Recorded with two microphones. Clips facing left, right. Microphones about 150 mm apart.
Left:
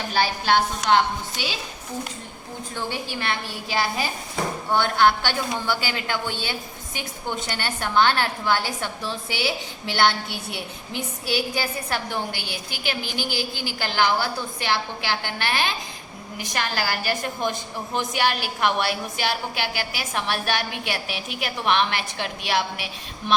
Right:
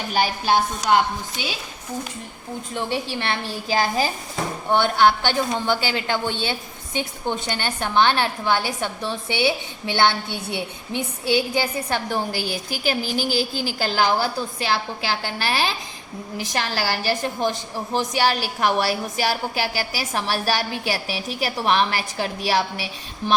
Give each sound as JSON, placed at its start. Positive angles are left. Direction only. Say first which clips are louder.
{"t": 0.1, "sound": "a woman's voice", "louder": "right 1 dB", "side_deg": -15}
{"t": 2.7, "sound": "a woman's voice", "louder": "right 4 dB", "side_deg": -25}
{"t": 4.7, "sound": "a woman's voice", "louder": "right 2 dB", "side_deg": -15}
{"t": 12.0, "sound": "a woman's voice", "louder": "right 4 dB", "side_deg": -40}